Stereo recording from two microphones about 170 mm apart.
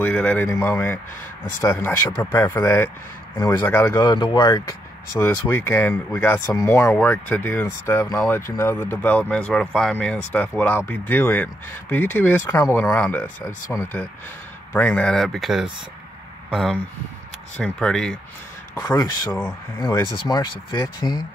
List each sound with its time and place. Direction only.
0.0 s speech: 5° left (ahead or behind)
4.0 s speech: 25° left (ahead or behind)
5.2 s speech: 10° left (ahead or behind)
18.8 s speech: 20° left (ahead or behind)